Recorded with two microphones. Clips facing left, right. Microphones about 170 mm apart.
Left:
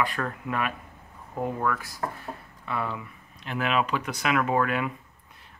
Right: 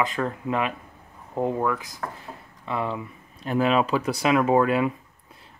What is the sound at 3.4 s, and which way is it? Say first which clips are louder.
Speech: right 5 dB; 35° right (ahead or behind).